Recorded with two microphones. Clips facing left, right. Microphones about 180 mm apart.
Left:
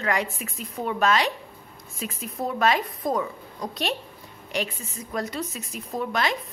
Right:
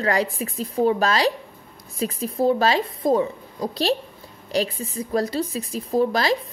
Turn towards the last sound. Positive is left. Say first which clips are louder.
# right 7 dB
turn(degrees=-35)  # may be behind; listen again after turning